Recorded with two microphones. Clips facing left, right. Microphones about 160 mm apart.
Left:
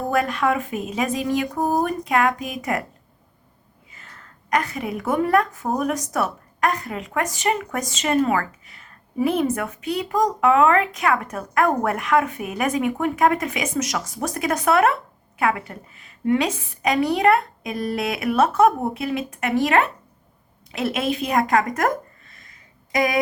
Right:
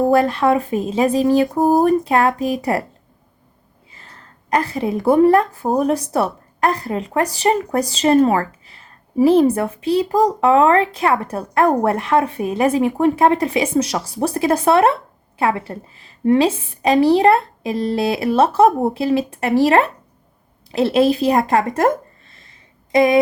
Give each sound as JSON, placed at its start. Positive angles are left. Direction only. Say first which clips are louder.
{"t": 0.0, "sound": "a woman's voice", "louder": "right 7 dB", "side_deg": -30}
{"t": 3.9, "sound": "a woman's voice", "louder": "right 2 dB", "side_deg": -30}